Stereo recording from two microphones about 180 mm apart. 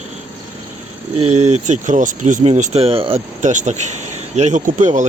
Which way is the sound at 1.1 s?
35° right (ahead or behind).